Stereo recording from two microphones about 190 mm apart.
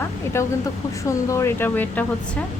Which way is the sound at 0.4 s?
15° left (ahead or behind).